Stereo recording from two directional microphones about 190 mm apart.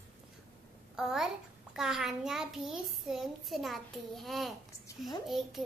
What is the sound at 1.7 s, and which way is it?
A child's voice, centre (ahead or behind).